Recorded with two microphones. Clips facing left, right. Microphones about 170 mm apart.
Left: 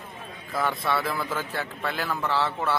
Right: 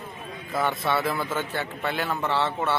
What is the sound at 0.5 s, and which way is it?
Speech, 25° right (ahead or behind).